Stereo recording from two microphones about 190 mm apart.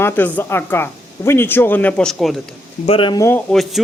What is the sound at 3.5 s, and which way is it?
Speech, centre (ahead or behind).